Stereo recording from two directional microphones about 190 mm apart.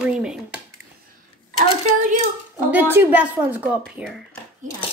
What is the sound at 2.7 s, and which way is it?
Speech, 10° right (ahead or behind).